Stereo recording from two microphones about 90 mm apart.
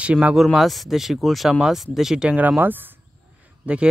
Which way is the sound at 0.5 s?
Centre (ahead or behind).